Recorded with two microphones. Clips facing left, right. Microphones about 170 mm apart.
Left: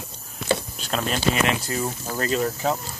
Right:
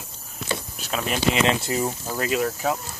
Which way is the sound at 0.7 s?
10° right (ahead or behind).